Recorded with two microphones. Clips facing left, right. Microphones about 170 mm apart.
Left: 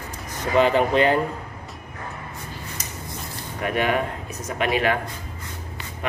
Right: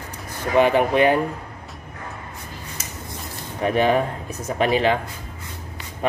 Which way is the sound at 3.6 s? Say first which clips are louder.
Right 4 dB; 30° right (ahead or behind).